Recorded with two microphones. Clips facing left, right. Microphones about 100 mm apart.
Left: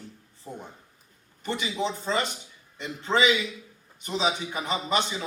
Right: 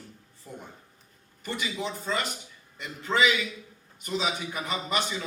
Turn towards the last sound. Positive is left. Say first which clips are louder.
# left 3 dB
turn(degrees=25)  # may be behind; listen again after turning